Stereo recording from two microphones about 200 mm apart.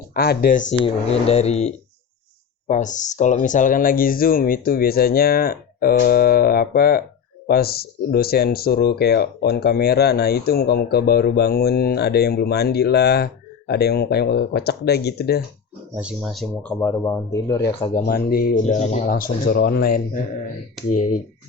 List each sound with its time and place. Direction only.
0.1 s speech: 50° left (ahead or behind)
0.8 s speech: 30° left (ahead or behind); by 15.4 s 55° left (ahead or behind)
16.0 s speech: 5° right (ahead or behind)
16.8 s speech: 15° left (ahead or behind)
18.0 s speech: 50° left (ahead or behind)